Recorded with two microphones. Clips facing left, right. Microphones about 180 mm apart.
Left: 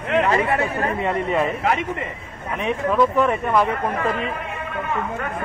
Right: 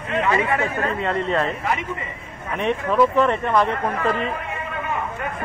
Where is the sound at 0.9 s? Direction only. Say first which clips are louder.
Left 1 dB; 15° left (ahead or behind).